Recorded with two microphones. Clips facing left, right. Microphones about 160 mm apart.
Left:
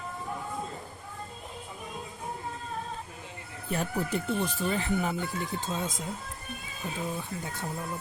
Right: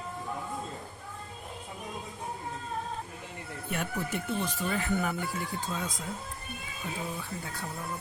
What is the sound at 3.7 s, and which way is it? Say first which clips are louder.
Speech: left 4 dB; 35° left (ahead or behind).